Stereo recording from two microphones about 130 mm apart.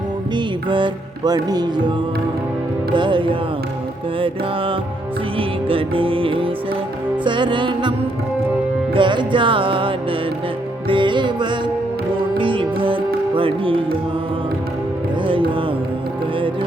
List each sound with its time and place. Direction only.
0.3 s music: 35° right (ahead or behind)
2.9 s music: 40° right (ahead or behind)
15.3 s music: 40° right (ahead or behind)